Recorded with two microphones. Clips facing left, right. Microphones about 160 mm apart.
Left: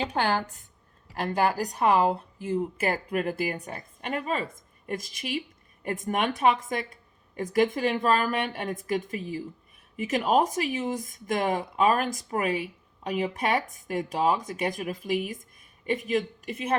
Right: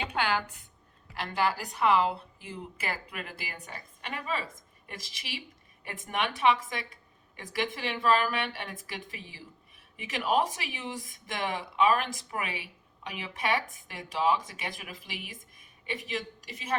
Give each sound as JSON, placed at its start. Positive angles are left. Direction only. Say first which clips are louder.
{"t": 0.1, "sound": "a woman's voice", "louder": "left 4 dB", "side_deg": 45}